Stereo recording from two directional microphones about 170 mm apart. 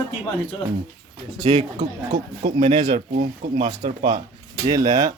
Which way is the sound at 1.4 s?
40° right (ahead or behind).